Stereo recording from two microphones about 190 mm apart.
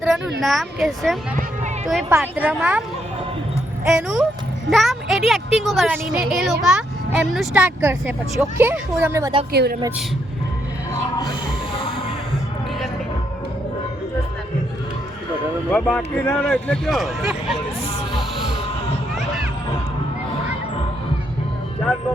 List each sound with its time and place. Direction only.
0.4 s a woman's voice: centre (ahead or behind)
1.4 s a sound: 40° right (ahead or behind)
2.0 s a child's voice: 10° right (ahead or behind)
3.8 s a woman's voice: 5° right (ahead or behind)
9.5 s speech: 55° right (ahead or behind)
15.7 s a woman's voice: 5° left (ahead or behind)
19.1 s a sound: centre (ahead or behind)